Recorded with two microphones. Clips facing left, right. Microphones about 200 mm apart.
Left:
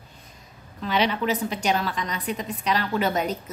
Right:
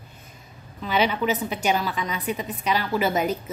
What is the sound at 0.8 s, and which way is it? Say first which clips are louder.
A woman's voice: right 1 dB; 5° right (ahead or behind).